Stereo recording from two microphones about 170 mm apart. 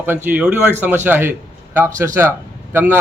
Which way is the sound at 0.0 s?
10° right (ahead or behind).